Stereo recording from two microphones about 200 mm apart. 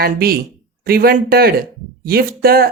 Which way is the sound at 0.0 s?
50° right (ahead or behind).